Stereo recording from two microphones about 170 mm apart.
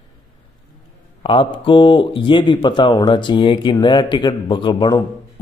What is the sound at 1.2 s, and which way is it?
Speech, 30° left (ahead or behind).